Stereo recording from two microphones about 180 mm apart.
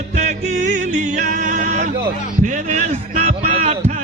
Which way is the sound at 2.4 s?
40° right (ahead or behind).